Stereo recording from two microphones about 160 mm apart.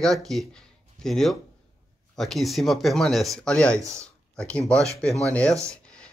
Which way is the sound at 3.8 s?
20° right (ahead or behind).